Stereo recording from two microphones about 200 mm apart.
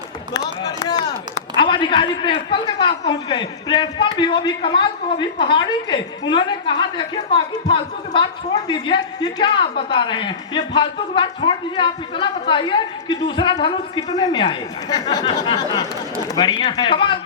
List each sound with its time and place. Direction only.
0.6 s a man's voice: 20° left (ahead or behind)